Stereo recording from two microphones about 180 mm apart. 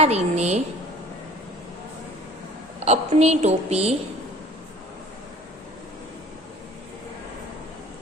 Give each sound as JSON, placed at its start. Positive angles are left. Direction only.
{"t": 0.0, "sound": "a woman's voice", "side_deg": -35}
{"t": 2.8, "sound": "a woman's voice", "side_deg": -35}